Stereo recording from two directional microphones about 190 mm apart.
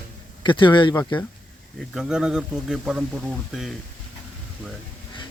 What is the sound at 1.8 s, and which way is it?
Speech, centre (ahead or behind).